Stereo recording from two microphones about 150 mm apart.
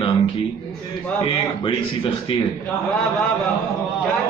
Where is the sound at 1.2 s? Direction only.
35° left (ahead or behind).